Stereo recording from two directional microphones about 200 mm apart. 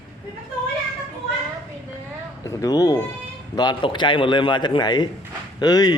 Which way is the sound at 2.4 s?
15° left (ahead or behind).